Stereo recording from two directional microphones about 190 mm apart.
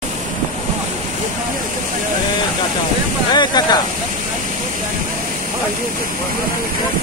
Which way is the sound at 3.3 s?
20° left (ahead or behind).